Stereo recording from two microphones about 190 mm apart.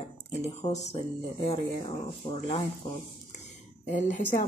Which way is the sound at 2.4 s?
30° left (ahead or behind).